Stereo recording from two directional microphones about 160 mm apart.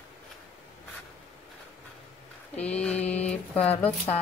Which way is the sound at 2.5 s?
5° left (ahead or behind).